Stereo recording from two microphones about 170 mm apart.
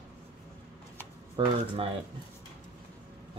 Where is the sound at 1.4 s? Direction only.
30° right (ahead or behind).